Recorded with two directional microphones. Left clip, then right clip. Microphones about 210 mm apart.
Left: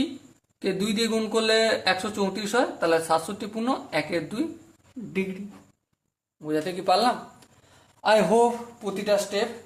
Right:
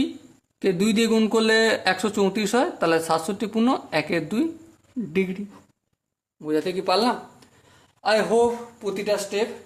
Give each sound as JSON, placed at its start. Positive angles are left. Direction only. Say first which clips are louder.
{"t": 0.6, "sound": "a man's voice", "louder": "right 4 dB", "side_deg": -35}
{"t": 6.4, "sound": "speech", "louder": "right 3 dB", "side_deg": -20}
{"t": 8.0, "sound": "speech", "louder": "even", "side_deg": 10}
{"t": 8.8, "sound": "speech", "louder": "left 1 dB", "side_deg": -10}